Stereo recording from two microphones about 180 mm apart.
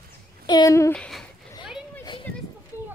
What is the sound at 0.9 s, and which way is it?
Speech, 5° left (ahead or behind).